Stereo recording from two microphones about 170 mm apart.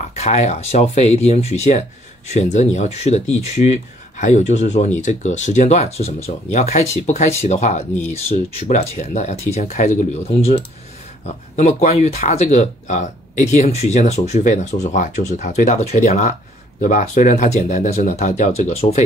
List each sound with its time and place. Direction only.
0.1 s speech: 40° left (ahead or behind)